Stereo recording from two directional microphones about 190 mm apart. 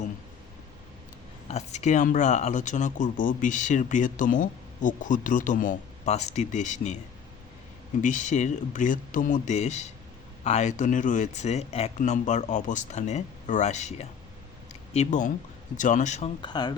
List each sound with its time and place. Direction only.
1.5 s speech: 35° left (ahead or behind)
8.0 s speech: 40° left (ahead or behind)
14.7 s a sound: 40° left (ahead or behind)
15.8 s speech: 40° left (ahead or behind)
16.4 s speech: 20° left (ahead or behind)